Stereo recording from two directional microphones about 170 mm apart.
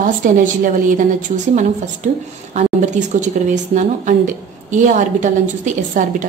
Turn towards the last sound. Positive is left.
turn(degrees=-45)  # may be behind; listen again after turning